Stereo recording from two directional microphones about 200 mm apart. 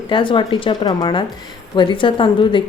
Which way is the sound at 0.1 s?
25° left (ahead or behind).